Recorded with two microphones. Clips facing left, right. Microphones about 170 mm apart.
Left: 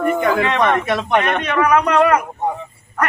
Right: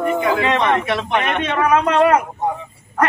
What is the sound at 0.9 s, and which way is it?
Speech, 45° left (ahead or behind).